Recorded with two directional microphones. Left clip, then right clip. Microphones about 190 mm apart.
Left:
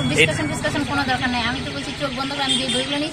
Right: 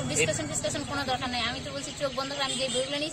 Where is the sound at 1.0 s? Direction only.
30° right (ahead or behind).